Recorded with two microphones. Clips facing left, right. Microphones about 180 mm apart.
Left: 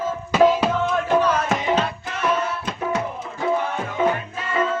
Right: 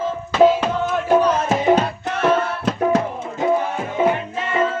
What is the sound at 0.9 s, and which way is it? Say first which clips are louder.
Music: right 6 dB; 10° right (ahead or behind).